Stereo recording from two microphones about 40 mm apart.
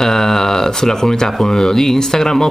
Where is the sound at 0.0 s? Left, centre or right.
Centre.